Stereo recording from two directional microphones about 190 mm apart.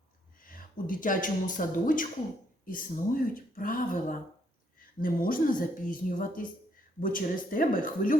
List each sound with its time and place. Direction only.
0.4 s a woman's voice: 45° left (ahead or behind)